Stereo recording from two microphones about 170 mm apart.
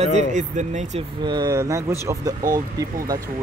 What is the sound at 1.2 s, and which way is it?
Speech, 25° right (ahead or behind).